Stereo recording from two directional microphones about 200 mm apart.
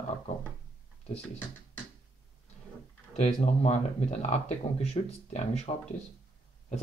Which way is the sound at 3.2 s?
35° left (ahead or behind).